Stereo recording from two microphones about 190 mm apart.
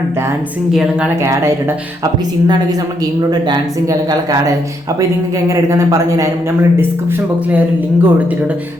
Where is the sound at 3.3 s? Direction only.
20° right (ahead or behind).